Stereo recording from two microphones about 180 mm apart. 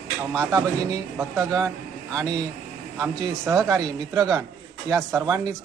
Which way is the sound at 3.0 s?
15° right (ahead or behind).